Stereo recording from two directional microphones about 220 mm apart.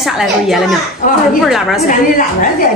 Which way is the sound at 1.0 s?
35° left (ahead or behind).